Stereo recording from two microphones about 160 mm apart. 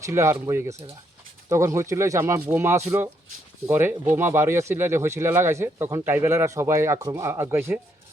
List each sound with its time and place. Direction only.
0.0 s speech: 15° right (ahead or behind)